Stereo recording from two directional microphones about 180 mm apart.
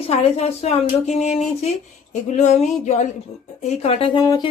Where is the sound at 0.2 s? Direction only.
35° left (ahead or behind).